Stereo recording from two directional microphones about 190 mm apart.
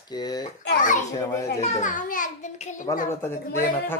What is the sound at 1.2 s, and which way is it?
Speech, 15° left (ahead or behind).